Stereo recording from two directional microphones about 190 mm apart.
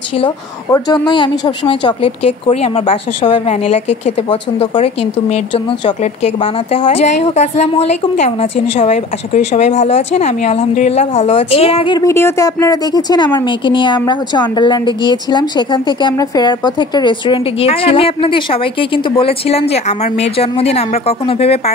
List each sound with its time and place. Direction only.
0.7 s a woman's voice: 20° left (ahead or behind)